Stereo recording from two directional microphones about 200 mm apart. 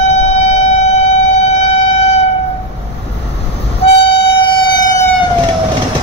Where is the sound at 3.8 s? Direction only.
30° left (ahead or behind).